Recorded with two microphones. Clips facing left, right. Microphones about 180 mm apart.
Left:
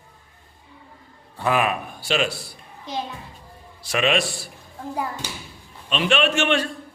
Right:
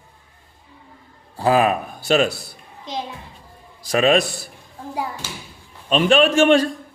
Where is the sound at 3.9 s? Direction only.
40° right (ahead or behind).